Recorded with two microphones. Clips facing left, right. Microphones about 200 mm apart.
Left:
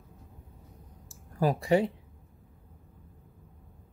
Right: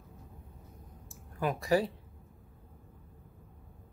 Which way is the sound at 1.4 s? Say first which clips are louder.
Left 5 dB; 35° left (ahead or behind).